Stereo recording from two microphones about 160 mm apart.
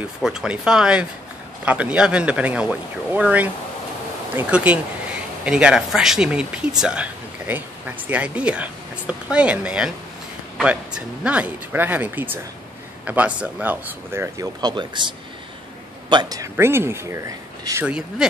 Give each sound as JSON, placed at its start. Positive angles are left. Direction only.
{"t": 0.2, "sound": "speech", "side_deg": -5}